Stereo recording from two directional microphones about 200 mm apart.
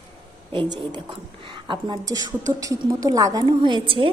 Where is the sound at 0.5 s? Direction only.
20° right (ahead or behind).